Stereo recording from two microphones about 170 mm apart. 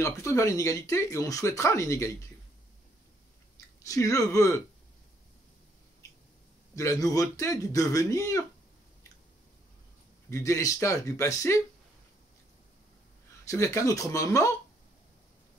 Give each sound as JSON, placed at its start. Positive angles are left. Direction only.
{"t": 0.0, "sound": "speech", "side_deg": 20}
{"t": 3.8, "sound": "speech", "side_deg": 20}
{"t": 6.7, "sound": "speech", "side_deg": 20}
{"t": 10.3, "sound": "speech", "side_deg": 20}
{"t": 13.5, "sound": "speech", "side_deg": 20}